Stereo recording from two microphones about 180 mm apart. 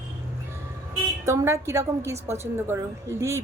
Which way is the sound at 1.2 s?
15° right (ahead or behind).